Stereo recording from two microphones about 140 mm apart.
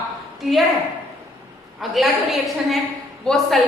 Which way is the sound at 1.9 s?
Centre (ahead or behind).